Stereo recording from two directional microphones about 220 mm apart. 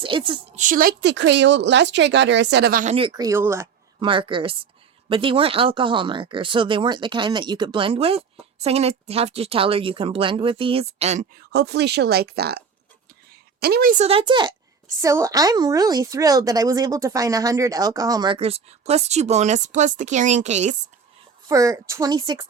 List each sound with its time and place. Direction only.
0.0 s speech: 20° right (ahead or behind)
0.6 s a woman's voice: 40° right (ahead or behind)
2.8 s a woman's voice: 25° right (ahead or behind)
21.4 s a woman's voice: 15° right (ahead or behind)